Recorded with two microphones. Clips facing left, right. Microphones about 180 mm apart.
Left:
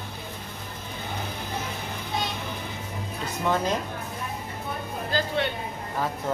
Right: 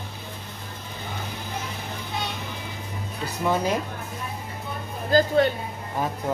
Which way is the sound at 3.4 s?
10° right (ahead or behind).